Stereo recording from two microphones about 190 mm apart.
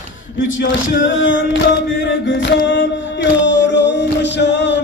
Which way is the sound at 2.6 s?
75° left (ahead or behind).